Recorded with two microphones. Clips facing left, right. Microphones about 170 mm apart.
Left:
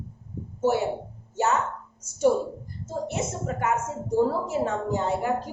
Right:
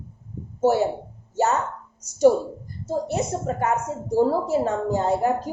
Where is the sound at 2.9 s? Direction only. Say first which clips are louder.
Right 5 dB; 35° right (ahead or behind).